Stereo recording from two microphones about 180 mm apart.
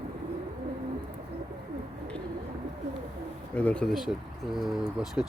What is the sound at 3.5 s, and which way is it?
Speech, 10° left (ahead or behind).